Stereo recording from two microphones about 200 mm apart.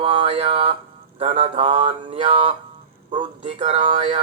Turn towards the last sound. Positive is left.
turn(degrees=-30)  # may be behind; listen again after turning